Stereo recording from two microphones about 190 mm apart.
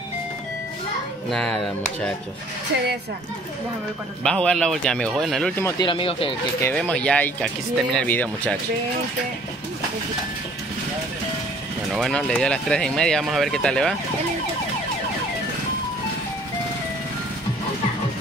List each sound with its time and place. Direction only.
1.3 s speech: 5° left (ahead or behind)
4.2 s speech: 5° left (ahead or behind)
5.6 s speech: 20° left (ahead or behind)
6.6 s speech: 5° left (ahead or behind)
11.9 s speech: centre (ahead or behind)